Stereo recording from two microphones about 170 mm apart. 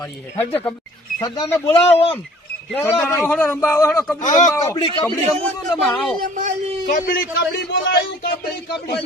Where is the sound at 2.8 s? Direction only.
15° left (ahead or behind).